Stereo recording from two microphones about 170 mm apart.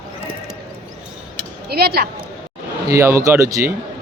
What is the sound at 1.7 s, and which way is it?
Speech, 65° right (ahead or behind).